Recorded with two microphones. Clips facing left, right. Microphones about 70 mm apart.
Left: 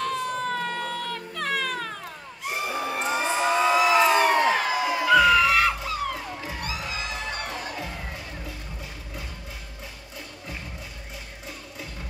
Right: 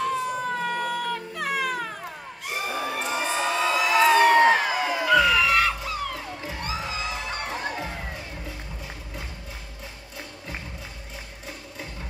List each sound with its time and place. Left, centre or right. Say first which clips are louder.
0.0 s music: right 1 dB; centre
2.6 s children shouting: even; centre
3.0 s a sound: left 3 dB; left
3.9 s crowd: right 5 dB; left
4.4 s crowd: right 4 dB; right
4.7 s crowd: left 1 dB; centre
6.5 s children shouting: right 3 dB; right